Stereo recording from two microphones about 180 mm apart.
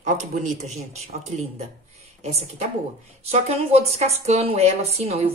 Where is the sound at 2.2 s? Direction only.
35° right (ahead or behind).